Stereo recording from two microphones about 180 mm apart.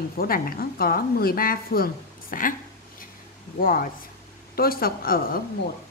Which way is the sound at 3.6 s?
55° left (ahead or behind).